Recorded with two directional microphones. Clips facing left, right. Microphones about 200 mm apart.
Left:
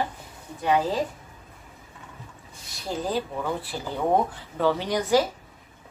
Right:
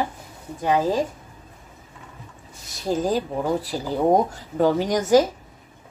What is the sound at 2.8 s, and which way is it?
A woman's voice, 45° right (ahead or behind).